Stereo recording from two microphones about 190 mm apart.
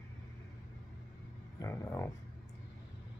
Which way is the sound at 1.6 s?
15° left (ahead or behind).